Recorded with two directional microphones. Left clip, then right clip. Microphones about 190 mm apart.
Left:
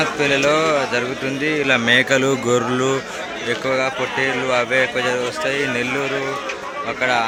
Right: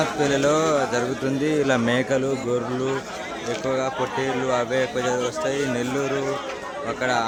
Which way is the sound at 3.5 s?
10° right (ahead or behind).